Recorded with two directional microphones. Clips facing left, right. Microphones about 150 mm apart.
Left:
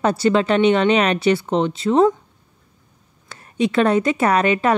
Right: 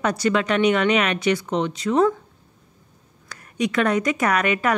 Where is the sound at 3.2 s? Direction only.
25° left (ahead or behind).